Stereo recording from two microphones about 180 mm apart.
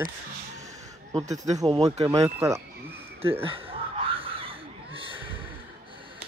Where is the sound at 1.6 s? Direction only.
20° right (ahead or behind).